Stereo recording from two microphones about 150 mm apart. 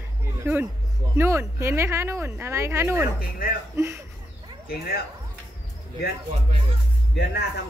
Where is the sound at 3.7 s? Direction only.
20° right (ahead or behind).